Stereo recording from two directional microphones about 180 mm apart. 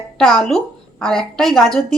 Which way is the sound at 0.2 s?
Centre (ahead or behind).